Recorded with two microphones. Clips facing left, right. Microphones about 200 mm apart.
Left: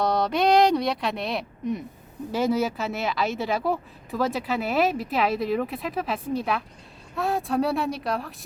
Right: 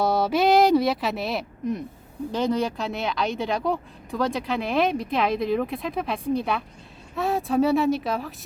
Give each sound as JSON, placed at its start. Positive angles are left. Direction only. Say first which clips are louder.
{"t": 0.0, "sound": "speech", "louder": "right 1 dB", "side_deg": -5}